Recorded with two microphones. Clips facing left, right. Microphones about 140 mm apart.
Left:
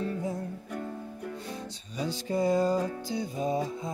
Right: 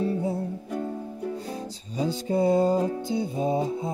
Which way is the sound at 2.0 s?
30° right (ahead or behind).